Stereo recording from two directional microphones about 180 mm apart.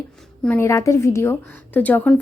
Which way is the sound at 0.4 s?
10° left (ahead or behind).